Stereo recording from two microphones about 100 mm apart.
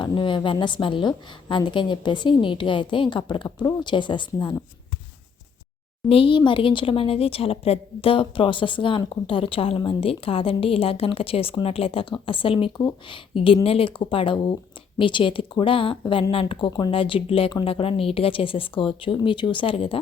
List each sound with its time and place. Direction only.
0.0 s a woman's voice: 50° left (ahead or behind)
6.1 s a woman's voice: 60° left (ahead or behind)